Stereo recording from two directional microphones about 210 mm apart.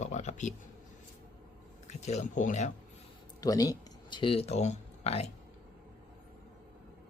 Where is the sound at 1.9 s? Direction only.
30° left (ahead or behind).